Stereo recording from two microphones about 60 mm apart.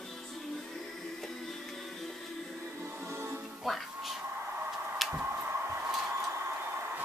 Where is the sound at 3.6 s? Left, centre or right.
Centre.